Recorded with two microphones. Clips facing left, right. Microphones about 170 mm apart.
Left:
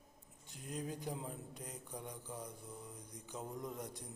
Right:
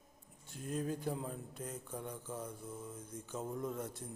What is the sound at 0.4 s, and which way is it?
Mantra, 15° left (ahead or behind).